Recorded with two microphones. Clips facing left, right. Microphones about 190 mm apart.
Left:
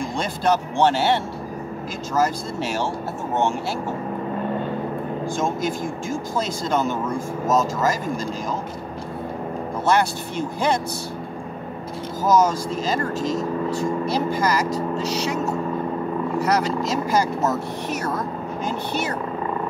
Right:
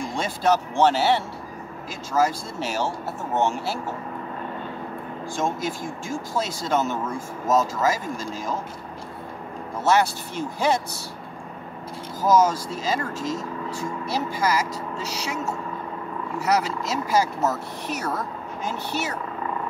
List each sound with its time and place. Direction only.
0.1 s speech: 5° right (ahead or behind)
5.4 s speech: centre (ahead or behind)
9.8 s speech: 5° right (ahead or behind)
12.3 s speech: 5° right (ahead or behind)
16.4 s speech: 5° right (ahead or behind)